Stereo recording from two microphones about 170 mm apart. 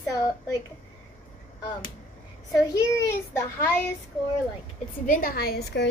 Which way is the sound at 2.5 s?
20° left (ahead or behind).